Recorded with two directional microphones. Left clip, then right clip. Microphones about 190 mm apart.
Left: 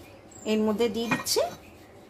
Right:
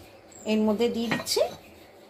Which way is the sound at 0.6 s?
65° left (ahead or behind).